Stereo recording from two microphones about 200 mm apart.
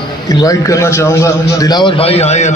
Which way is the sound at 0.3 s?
15° left (ahead or behind).